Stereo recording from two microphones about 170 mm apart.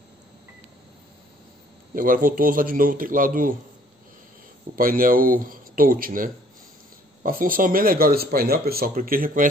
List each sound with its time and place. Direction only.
2.0 s speech: 55° right (ahead or behind)
4.7 s speech: 55° right (ahead or behind)